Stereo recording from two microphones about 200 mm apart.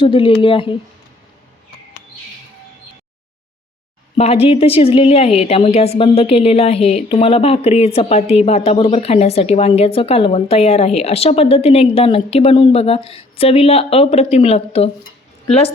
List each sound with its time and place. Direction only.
0.0 s a woman's voice: 25° left (ahead or behind)
4.2 s a woman's voice: 30° left (ahead or behind)